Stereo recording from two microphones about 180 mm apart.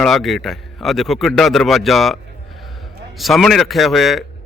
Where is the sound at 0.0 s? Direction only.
Centre (ahead or behind).